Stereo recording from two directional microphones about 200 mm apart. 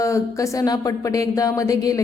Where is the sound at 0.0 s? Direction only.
15° left (ahead or behind).